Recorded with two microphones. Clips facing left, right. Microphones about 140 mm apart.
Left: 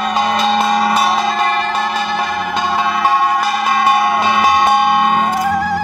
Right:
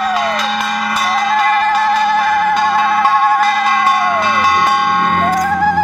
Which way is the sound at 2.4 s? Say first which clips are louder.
Right 4 dB; 15° left (ahead or behind).